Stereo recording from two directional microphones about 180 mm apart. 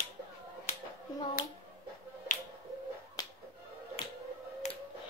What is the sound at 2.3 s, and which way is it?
Finger snapping, 45° left (ahead or behind).